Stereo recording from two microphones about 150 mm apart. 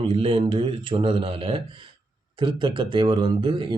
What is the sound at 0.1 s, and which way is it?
Speech, 35° right (ahead or behind).